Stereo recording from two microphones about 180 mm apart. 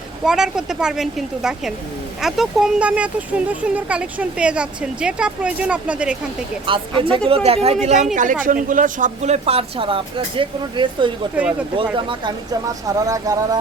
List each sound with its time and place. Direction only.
0.3 s speech: 5° right (ahead or behind)
6.7 s speech: 30° right (ahead or behind)